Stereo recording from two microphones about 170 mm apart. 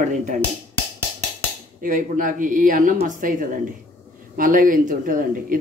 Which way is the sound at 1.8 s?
50° right (ahead or behind).